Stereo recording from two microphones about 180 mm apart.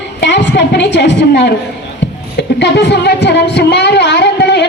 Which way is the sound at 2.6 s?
70° left (ahead or behind).